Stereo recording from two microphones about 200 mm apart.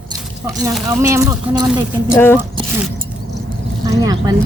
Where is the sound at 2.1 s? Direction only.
10° left (ahead or behind).